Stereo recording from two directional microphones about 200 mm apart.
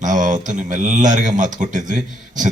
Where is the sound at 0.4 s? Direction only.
40° right (ahead or behind).